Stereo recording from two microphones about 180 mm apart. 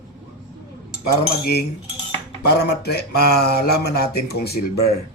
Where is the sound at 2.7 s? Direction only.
65° left (ahead or behind).